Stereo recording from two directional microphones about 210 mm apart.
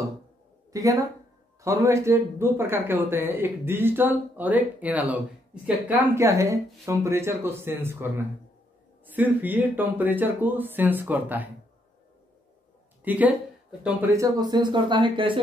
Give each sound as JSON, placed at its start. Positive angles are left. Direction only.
{"t": 0.7, "sound": "speech", "side_deg": -15}
{"t": 13.0, "sound": "speech", "side_deg": -5}